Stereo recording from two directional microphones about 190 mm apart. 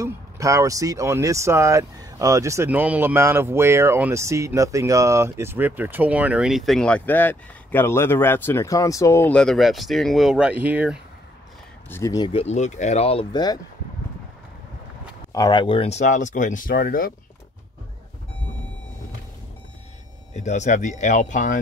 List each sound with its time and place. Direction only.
0.0 s speech: 15° right (ahead or behind)
11.9 s speech: 15° left (ahead or behind)
15.3 s speech: 20° left (ahead or behind); by 17.1 s 50° left (ahead or behind)
20.3 s speech: 40° left (ahead or behind)